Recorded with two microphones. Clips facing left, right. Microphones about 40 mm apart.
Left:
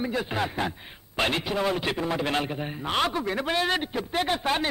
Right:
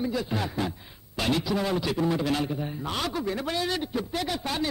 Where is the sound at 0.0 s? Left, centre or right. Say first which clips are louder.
Left 1 dB; left.